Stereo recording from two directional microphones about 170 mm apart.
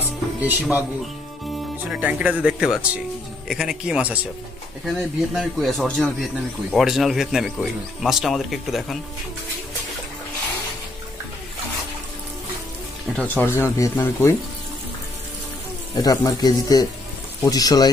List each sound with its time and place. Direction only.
0.4 s speech: 10° right (ahead or behind)
1.9 s speech: 5° right (ahead or behind)
13.1 s speech: 10° left (ahead or behind)
15.9 s a man's voice: 20° left (ahead or behind)